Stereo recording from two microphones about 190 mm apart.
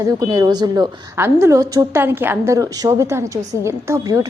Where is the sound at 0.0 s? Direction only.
20° right (ahead or behind).